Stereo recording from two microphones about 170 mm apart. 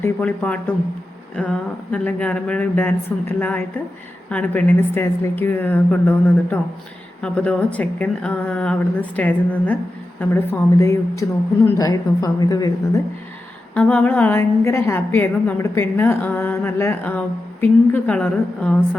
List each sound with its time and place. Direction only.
0.0 s a woman's voice: 10° left (ahead or behind)
13.7 s a woman's voice: 5° left (ahead or behind)